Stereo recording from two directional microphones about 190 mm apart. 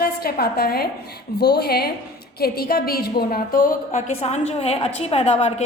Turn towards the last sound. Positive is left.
turn(degrees=35)  # may be behind; listen again after turning